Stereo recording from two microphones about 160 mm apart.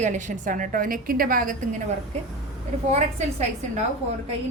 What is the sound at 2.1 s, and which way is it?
Speech, 45° right (ahead or behind).